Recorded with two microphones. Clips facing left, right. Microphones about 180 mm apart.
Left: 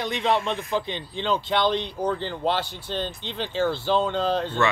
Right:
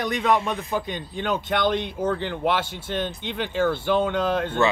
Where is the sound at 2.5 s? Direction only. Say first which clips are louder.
Right 1 dB; 65° right (ahead or behind).